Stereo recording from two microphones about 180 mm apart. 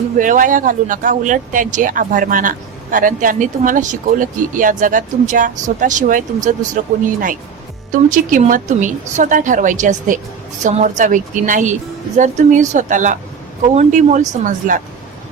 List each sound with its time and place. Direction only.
0.2 s speech: 45° right (ahead or behind)
7.9 s speech: 45° right (ahead or behind)